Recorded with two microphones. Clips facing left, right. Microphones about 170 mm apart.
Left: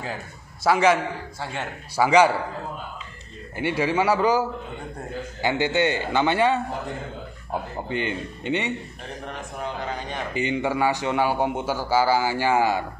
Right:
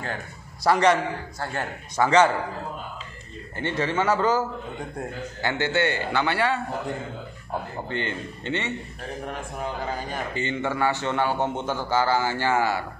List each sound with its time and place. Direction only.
0.7 s a man's voice: 5° left (ahead or behind)
2.0 s a man's voice: 10° left (ahead or behind)
3.5 s a man's voice: 10° left (ahead or behind)
7.9 s a man's voice: 15° left (ahead or behind)
9.2 s a man's voice: 5° right (ahead or behind)
10.3 s a man's voice: 15° left (ahead or behind)